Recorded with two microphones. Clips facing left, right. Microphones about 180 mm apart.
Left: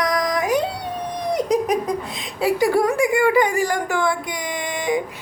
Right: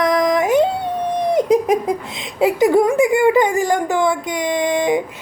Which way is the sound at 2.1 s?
20° right (ahead or behind).